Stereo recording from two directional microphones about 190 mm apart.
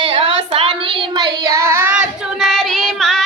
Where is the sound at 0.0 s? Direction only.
30° right (ahead or behind).